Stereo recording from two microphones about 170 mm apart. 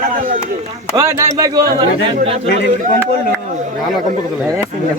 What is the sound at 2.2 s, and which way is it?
Speech, 35° right (ahead or behind).